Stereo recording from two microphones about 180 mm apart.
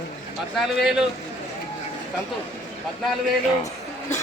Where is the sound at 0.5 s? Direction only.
Centre (ahead or behind).